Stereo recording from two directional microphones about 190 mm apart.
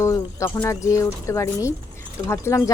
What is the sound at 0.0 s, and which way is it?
A woman's voice, 15° left (ahead or behind).